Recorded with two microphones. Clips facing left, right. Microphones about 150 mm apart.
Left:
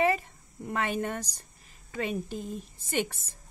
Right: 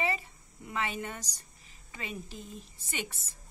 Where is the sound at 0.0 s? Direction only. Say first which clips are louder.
Left 7 dB; 50° left (ahead or behind).